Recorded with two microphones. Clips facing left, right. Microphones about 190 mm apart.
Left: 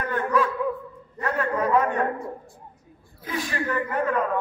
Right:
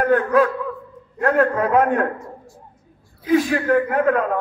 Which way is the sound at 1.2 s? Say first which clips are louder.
Right 7 dB; 50° right (ahead or behind).